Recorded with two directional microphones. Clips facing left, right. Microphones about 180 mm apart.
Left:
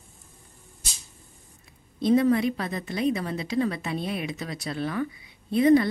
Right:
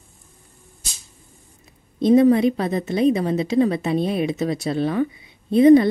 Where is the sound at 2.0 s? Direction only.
20° right (ahead or behind).